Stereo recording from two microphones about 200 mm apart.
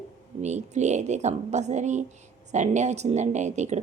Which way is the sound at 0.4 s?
35° right (ahead or behind).